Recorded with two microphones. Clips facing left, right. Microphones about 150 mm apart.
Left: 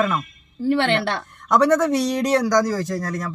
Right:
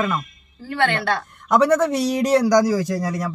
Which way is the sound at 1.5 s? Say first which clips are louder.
Even; 5° right (ahead or behind).